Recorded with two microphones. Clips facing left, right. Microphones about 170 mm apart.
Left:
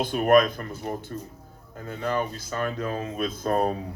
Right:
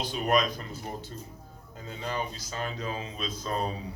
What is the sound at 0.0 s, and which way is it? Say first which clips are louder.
Speech: left 7 dB; 55° left (ahead or behind).